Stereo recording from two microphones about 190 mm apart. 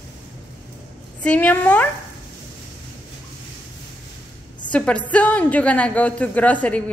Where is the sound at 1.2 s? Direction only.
10° left (ahead or behind).